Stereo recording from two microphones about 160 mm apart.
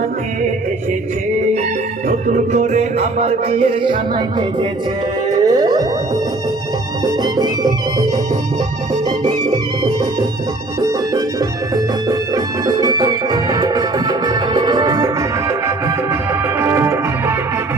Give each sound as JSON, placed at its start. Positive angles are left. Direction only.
{"t": 2.0, "sound": "music", "side_deg": -45}
{"t": 7.0, "sound": "music", "side_deg": -25}